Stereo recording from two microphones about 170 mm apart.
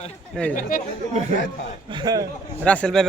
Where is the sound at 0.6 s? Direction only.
55° left (ahead or behind).